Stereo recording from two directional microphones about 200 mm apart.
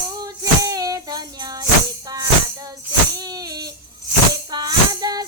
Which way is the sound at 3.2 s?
20° right (ahead or behind).